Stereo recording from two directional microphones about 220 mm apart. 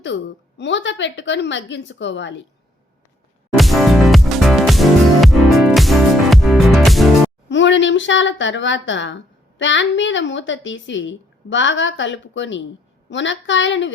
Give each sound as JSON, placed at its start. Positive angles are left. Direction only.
{"t": 0.0, "sound": "a woman's voice", "side_deg": 55}
{"t": 3.6, "sound": "music", "side_deg": 0}
{"t": 7.5, "sound": "a woman's voice", "side_deg": 55}